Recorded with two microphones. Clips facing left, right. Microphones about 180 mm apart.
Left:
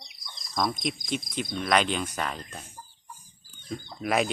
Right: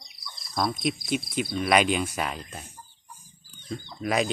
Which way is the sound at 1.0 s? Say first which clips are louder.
Right 3 dB; 5° right (ahead or behind).